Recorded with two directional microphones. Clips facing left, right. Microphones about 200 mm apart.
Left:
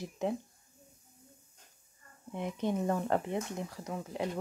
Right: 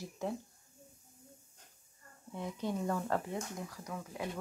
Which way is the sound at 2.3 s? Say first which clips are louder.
Left 4 dB; 20° left (ahead or behind).